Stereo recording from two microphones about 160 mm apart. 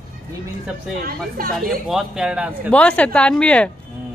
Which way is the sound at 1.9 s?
5° right (ahead or behind).